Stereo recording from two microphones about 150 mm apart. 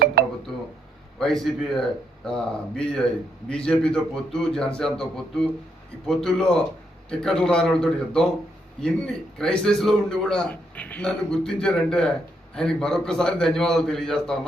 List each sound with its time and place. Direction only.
0.0 s telephone dialing: 90° right
1.2 s a man's voice: centre (ahead or behind)